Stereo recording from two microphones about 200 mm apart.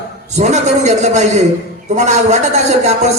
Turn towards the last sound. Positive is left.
turn(degrees=-35)  # may be behind; listen again after turning